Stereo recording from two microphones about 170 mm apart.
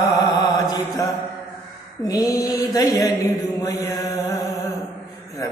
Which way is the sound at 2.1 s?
20° left (ahead or behind).